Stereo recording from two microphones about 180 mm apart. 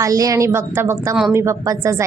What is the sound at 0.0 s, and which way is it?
Speech, 20° right (ahead or behind).